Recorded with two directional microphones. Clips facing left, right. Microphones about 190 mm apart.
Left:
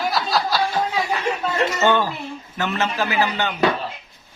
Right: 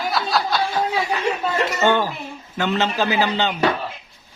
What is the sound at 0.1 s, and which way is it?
Snicker, centre (ahead or behind).